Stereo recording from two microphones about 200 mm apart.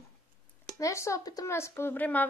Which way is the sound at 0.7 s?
15° left (ahead or behind).